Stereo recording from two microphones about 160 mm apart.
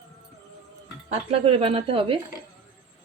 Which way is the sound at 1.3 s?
35° right (ahead or behind).